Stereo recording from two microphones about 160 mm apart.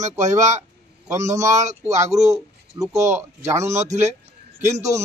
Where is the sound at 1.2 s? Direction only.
45° right (ahead or behind).